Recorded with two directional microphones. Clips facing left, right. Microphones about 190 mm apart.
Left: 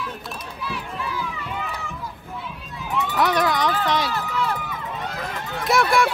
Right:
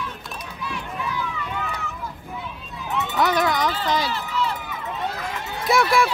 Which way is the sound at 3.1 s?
Centre (ahead or behind).